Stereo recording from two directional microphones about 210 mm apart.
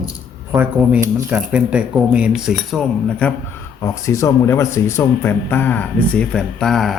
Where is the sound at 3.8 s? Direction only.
15° left (ahead or behind).